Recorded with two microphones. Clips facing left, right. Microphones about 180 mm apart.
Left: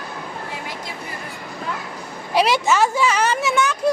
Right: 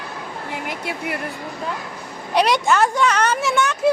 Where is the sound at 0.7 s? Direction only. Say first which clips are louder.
Right 5 dB; 70° right (ahead or behind).